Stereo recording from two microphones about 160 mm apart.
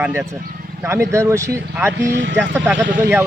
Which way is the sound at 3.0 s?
20° right (ahead or behind).